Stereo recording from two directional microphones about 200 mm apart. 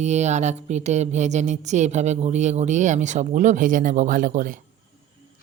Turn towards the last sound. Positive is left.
turn(degrees=-40)  # may be behind; listen again after turning